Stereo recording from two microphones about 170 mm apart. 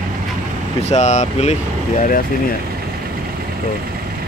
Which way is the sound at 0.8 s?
40° left (ahead or behind).